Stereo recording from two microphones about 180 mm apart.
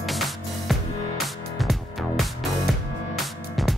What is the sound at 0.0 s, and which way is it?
Music, centre (ahead or behind).